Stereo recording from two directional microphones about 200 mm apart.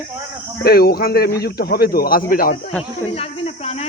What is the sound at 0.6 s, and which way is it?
Speech, 50° left (ahead or behind).